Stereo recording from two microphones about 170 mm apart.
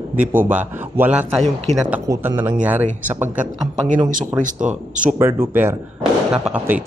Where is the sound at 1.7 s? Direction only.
40° right (ahead or behind).